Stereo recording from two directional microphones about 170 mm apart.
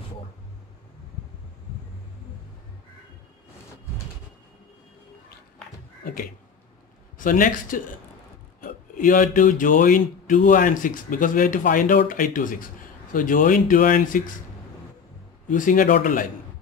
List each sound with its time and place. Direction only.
7.2 s speech: 50° left (ahead or behind)
15.5 s speech: 50° left (ahead or behind)